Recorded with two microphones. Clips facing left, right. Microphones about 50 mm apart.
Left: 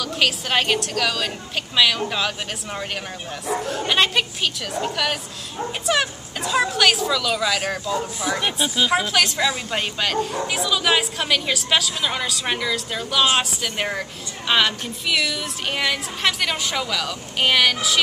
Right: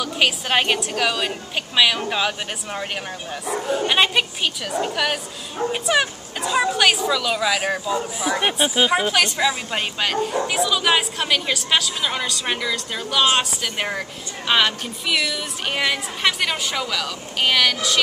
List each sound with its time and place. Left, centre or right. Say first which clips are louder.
0.0 s a woman's voice: right 1 dB; centre
8.4 s speech: right 4 dB; right; by 17.9 s centre